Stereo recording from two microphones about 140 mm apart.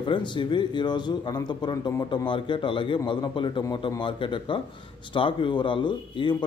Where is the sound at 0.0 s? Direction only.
35° left (ahead or behind).